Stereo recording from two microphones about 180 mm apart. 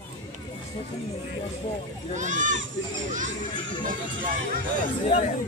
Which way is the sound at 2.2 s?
45° right (ahead or behind).